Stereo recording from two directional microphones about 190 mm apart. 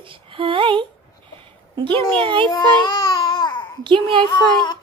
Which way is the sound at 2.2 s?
25° right (ahead or behind).